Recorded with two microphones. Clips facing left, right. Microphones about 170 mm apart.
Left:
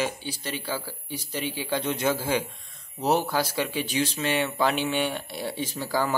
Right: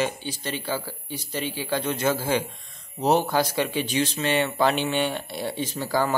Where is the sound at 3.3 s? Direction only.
5° left (ahead or behind).